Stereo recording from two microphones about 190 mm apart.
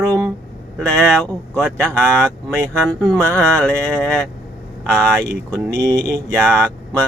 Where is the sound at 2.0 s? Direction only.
15° right (ahead or behind).